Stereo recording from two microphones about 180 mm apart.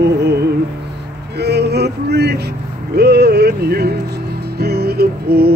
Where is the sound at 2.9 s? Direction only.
65° right (ahead or behind).